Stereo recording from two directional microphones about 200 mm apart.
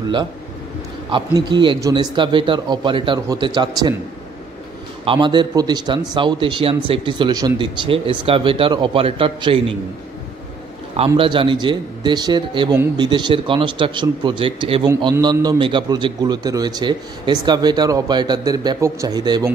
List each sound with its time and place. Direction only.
1.1 s a man's voice: 25° right (ahead or behind)
5.0 s a man's voice: 25° right (ahead or behind)
11.0 s a man's voice: 25° right (ahead or behind)